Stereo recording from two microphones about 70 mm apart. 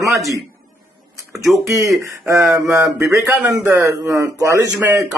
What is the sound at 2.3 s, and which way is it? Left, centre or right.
Speech, right.